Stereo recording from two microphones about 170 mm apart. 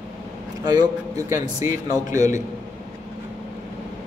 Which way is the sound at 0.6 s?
25° right (ahead or behind).